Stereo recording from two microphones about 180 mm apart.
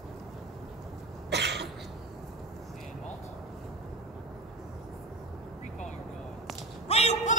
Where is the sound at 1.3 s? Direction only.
70° right (ahead or behind).